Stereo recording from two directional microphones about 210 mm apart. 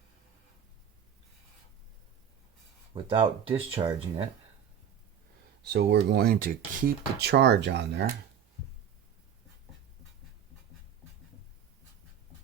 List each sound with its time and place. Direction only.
2.9 s speech: 25° right (ahead or behind)
5.6 s speech: 50° right (ahead or behind)